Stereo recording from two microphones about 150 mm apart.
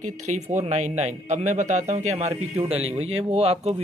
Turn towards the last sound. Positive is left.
turn(degrees=-40)  # may be behind; listen again after turning